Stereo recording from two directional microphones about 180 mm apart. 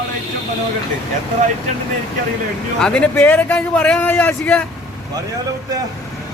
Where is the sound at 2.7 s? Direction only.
5° left (ahead or behind).